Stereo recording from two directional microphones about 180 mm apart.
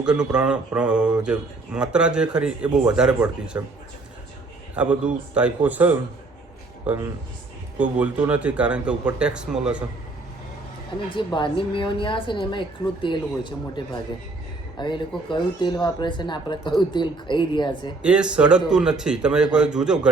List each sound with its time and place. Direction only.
0.0 s speech: 5° right (ahead or behind)
4.8 s a man's voice: 5° right (ahead or behind)
11.1 s speech: 25° left (ahead or behind)
18.0 s speech: 5° right (ahead or behind)